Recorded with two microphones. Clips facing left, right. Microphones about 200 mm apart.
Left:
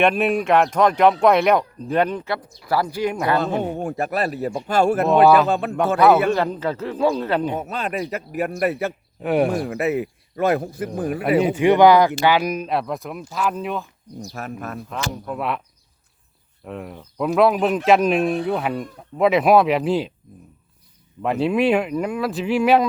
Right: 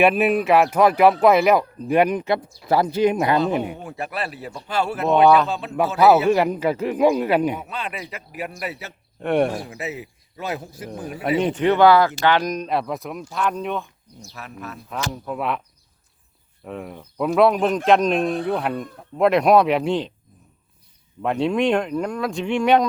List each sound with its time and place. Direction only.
0.0 s speech: 5° right (ahead or behind); by 3.3 s 20° right (ahead or behind)
3.8 s speech: 45° left (ahead or behind)
5.0 s speech: 5° left (ahead or behind)
5.5 s speech: 55° left (ahead or behind)
6.0 s speech: 5° right (ahead or behind)
7.5 s speech: 40° left (ahead or behind)
9.2 s speech: 5° left (ahead or behind)
9.6 s a man's voice: 60° left (ahead or behind)
11.2 s speech: 5° left (ahead or behind)
14.3 s speech: 50° left (ahead or behind)
14.8 s speech: centre (ahead or behind)
16.6 s speech: centre (ahead or behind)
21.2 s speech: centre (ahead or behind)